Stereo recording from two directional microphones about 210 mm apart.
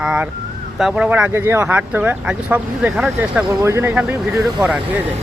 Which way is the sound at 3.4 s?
15° right (ahead or behind).